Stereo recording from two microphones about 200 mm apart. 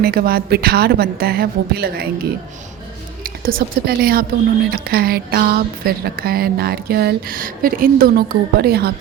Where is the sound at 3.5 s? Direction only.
50° right (ahead or behind).